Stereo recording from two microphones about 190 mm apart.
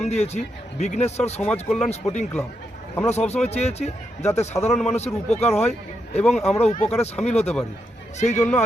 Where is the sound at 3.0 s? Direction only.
35° left (ahead or behind).